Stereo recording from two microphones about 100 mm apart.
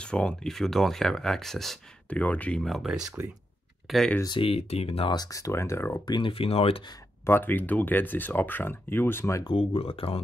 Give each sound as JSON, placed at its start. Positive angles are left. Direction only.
{"t": 0.0, "sound": "speech", "side_deg": 10}
{"t": 2.0, "sound": "speech", "side_deg": 15}
{"t": 2.6, "sound": "speech", "side_deg": 0}
{"t": 3.2, "sound": "speech", "side_deg": -20}
{"t": 3.8, "sound": "speech", "side_deg": 0}
{"t": 4.4, "sound": "speech", "side_deg": 80}
{"t": 5.1, "sound": "speech", "side_deg": 40}
{"t": 6.0, "sound": "speech", "side_deg": 50}
{"t": 6.3, "sound": "speech", "side_deg": 70}
{"t": 7.2, "sound": "speech", "side_deg": 20}
{"t": 9.6, "sound": "speech", "side_deg": 70}